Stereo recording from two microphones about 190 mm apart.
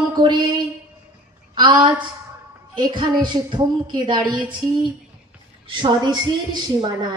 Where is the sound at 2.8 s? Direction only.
25° right (ahead or behind).